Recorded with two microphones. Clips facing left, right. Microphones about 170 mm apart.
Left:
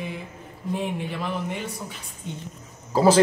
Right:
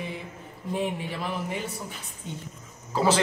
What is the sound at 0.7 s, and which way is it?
Speech, centre (ahead or behind).